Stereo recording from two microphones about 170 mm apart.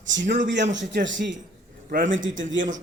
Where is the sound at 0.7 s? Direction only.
90° right.